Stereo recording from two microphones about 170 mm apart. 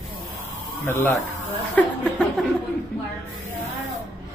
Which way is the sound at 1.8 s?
10° left (ahead or behind).